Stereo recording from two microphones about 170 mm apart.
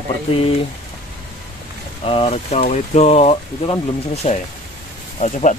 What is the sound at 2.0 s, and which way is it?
Speech, 35° left (ahead or behind).